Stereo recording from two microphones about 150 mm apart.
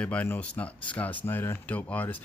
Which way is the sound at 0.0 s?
10° left (ahead or behind).